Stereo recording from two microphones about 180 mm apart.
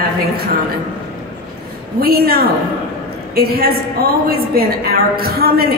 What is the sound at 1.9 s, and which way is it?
A woman's voice, 55° right (ahead or behind).